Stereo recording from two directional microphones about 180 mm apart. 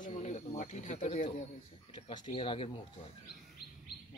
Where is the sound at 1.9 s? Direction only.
25° left (ahead or behind).